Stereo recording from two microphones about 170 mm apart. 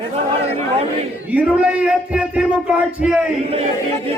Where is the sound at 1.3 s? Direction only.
10° right (ahead or behind).